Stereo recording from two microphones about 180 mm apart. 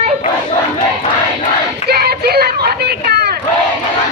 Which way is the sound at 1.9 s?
60° right (ahead or behind).